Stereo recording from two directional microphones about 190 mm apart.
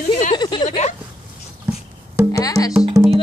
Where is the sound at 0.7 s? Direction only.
35° left (ahead or behind).